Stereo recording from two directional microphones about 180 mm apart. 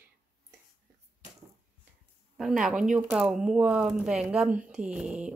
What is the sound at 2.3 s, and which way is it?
Speech, centre (ahead or behind).